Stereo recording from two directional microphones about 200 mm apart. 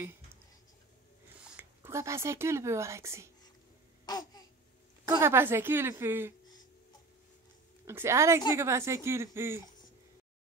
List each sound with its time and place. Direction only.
1.6 s speech: 10° right (ahead or behind)
4.0 s babbling: 20° left (ahead or behind)
5.0 s a woman's voice: 10° right (ahead or behind)
7.8 s a woman's voice: 10° right (ahead or behind)